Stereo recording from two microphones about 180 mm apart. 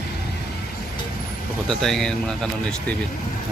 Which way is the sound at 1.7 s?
Centre (ahead or behind).